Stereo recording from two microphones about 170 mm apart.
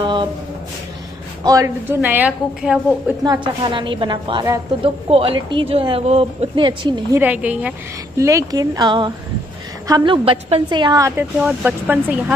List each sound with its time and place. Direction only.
0.0 s a sound: 30° right (ahead or behind)
1.4 s a woman's voice: 20° right (ahead or behind)
3.6 s a woman's voice: 30° right (ahead or behind)
7.2 s a woman's voice: 10° right (ahead or behind)